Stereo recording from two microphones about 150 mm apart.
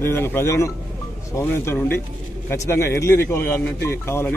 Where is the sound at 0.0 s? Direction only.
15° left (ahead or behind).